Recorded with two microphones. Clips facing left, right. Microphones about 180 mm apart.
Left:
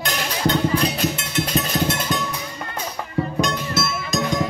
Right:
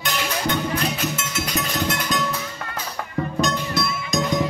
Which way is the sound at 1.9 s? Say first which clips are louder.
Left 2 dB; 25° left (ahead or behind).